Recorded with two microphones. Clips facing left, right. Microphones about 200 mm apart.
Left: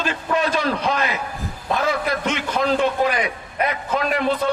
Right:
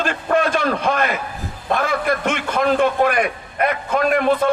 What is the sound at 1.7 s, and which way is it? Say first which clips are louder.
A man's voice: right 2 dB; 55° right (ahead or behind).